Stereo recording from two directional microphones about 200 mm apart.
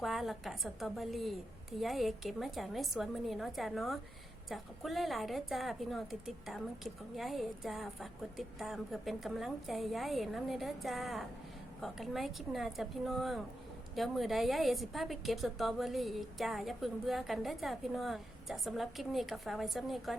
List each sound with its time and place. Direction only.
0.0 s a woman's voice: centre (ahead or behind)